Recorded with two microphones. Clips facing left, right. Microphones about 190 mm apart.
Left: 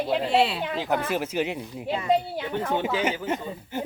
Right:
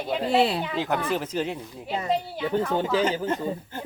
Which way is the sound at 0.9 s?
10° left (ahead or behind).